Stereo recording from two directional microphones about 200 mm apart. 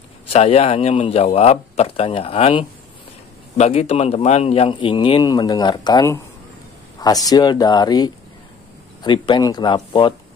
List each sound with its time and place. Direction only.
0.3 s speech: 30° left (ahead or behind)